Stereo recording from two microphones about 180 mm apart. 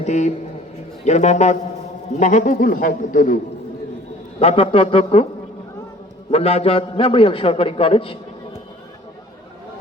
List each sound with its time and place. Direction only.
0.0 s a man's voice: 40° left (ahead or behind)
4.4 s a man's voice: 30° left (ahead or behind)
6.3 s a man's voice: 35° left (ahead or behind)